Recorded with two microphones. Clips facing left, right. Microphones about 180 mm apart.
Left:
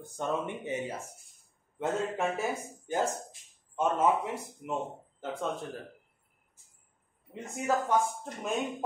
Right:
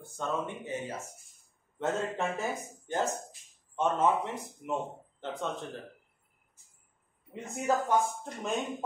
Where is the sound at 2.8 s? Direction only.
10° left (ahead or behind).